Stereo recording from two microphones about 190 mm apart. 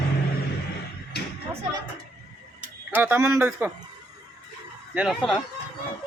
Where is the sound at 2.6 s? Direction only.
10° right (ahead or behind).